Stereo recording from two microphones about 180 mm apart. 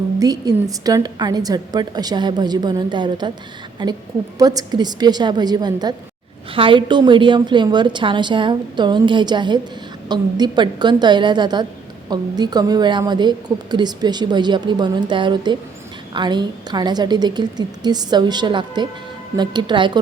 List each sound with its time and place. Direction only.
0.2 s a woman's voice: 20° right (ahead or behind)